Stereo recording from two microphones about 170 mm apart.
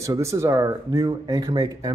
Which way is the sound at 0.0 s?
20° right (ahead or behind).